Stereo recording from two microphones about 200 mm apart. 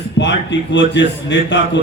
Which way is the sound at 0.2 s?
65° left (ahead or behind).